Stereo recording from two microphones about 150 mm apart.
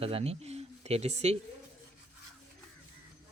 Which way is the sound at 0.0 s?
40° right (ahead or behind).